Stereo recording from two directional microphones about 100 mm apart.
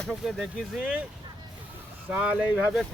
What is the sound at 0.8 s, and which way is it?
Speech, 15° right (ahead or behind).